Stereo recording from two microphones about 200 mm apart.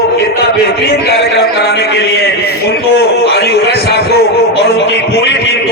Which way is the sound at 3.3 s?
55° left (ahead or behind).